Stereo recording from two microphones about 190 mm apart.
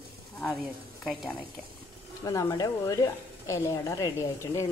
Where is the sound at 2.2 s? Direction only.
20° left (ahead or behind).